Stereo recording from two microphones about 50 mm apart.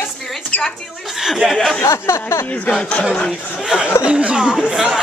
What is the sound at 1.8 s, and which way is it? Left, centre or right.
Speech, left.